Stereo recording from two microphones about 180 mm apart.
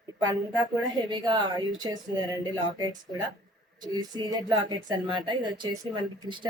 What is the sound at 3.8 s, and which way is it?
A woman's voice, 25° right (ahead or behind).